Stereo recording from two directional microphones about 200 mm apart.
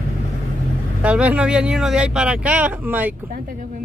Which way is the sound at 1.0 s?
5° right (ahead or behind).